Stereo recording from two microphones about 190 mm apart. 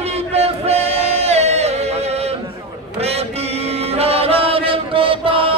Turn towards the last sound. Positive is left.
turn(degrees=-30)  # may be behind; listen again after turning